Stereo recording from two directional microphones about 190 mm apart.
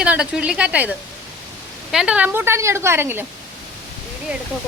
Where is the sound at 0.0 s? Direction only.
5° right (ahead or behind).